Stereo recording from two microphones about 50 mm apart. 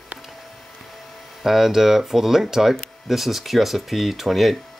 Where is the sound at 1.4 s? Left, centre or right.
Centre.